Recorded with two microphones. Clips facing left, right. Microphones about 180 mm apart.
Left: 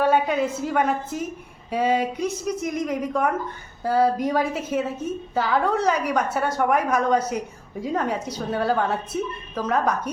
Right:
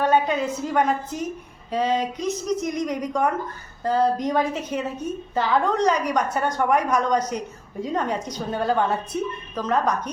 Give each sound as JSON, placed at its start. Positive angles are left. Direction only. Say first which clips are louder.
{"t": 0.0, "sound": "a woman's voice", "louder": "even", "side_deg": 10}